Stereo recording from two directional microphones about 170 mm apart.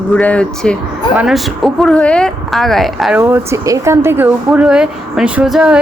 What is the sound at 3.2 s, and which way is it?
Speech, 15° right (ahead or behind).